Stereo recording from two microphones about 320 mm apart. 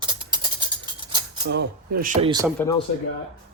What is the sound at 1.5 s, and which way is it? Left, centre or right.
Speech, right.